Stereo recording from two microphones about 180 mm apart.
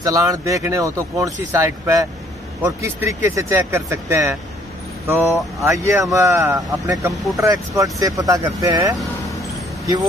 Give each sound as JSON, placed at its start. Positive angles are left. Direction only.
{"t": 0.0, "sound": "speech", "side_deg": -20}